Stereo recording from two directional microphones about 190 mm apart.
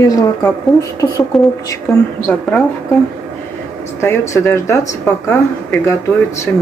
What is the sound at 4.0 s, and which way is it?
A woman's voice, 15° left (ahead or behind).